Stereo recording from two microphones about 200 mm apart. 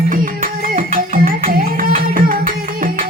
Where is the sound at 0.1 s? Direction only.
45° right (ahead or behind).